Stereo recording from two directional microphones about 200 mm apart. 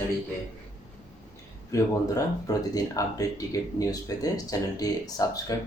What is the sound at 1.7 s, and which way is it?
Speech, 15° left (ahead or behind).